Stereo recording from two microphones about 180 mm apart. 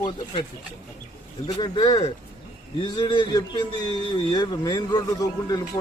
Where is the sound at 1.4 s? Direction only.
20° left (ahead or behind).